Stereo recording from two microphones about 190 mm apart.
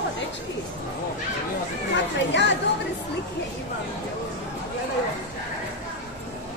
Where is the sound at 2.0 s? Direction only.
65° left (ahead or behind).